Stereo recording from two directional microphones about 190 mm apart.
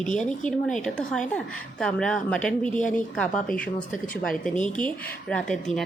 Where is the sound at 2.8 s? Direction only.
40° left (ahead or behind).